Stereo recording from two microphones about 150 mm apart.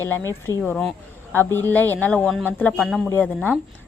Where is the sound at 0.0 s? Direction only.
15° left (ahead or behind).